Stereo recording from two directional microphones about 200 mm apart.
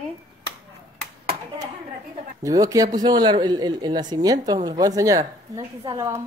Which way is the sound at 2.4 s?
15° right (ahead or behind).